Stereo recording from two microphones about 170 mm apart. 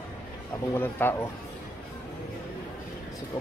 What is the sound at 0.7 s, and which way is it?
Speech, 15° left (ahead or behind).